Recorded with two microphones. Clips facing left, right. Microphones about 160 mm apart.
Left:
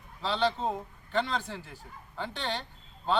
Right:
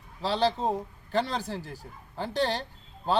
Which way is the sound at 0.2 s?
40° right (ahead or behind).